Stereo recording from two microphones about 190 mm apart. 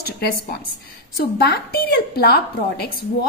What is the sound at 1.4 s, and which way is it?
A woman's voice, 55° left (ahead or behind).